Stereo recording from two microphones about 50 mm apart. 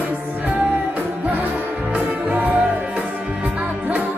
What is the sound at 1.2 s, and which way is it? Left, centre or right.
Music, right.